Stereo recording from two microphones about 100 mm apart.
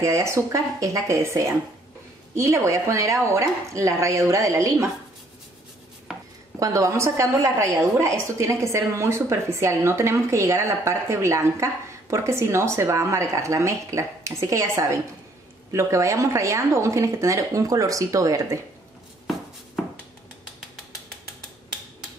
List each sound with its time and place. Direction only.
0.0 s a woman's voice: 30° right (ahead or behind)
6.1 s dishes: 5° right (ahead or behind)
6.6 s a woman's voice: 35° right (ahead or behind)